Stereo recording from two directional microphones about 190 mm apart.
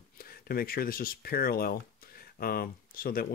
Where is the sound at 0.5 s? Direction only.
50° left (ahead or behind).